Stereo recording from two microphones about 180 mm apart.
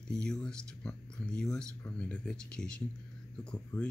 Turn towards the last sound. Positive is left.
turn(degrees=5)  # may be behind; listen again after turning